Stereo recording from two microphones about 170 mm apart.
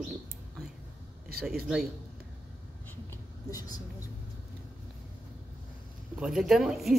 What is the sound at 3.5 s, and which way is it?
Speech, 20° left (ahead or behind).